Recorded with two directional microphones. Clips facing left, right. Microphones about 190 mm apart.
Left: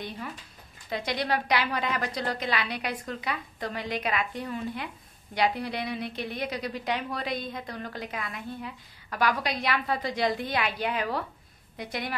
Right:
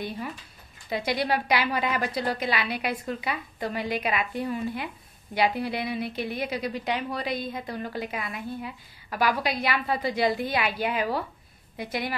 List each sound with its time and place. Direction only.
0.8 s a woman's voice: 5° right (ahead or behind)